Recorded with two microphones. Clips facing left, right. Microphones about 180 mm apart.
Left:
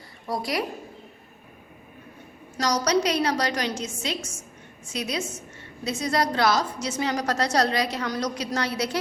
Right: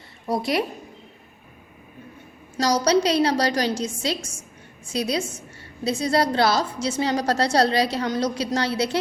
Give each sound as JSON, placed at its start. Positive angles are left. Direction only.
{"t": 0.3, "sound": "a woman's voice", "side_deg": -25}
{"t": 2.8, "sound": "a woman's voice", "side_deg": -30}